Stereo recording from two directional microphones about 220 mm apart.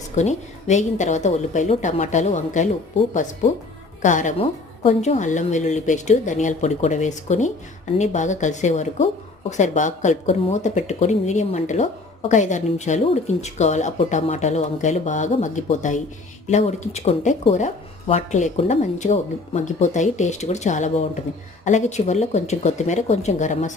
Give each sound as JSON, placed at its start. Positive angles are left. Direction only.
{"t": 0.2, "sound": "speech", "side_deg": 30}